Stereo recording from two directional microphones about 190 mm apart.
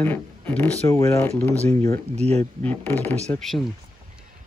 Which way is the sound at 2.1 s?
35° right (ahead or behind).